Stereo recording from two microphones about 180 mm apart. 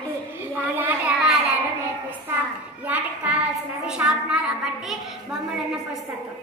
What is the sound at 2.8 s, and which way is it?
A child's voice, 10° right (ahead or behind).